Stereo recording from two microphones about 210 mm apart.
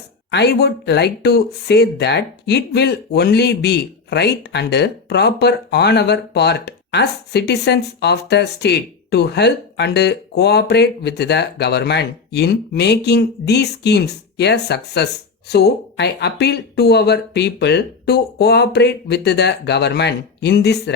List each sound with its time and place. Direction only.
0.3 s speech: 55° left (ahead or behind)